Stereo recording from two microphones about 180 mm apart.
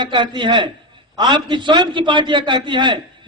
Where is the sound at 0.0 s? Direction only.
25° right (ahead or behind).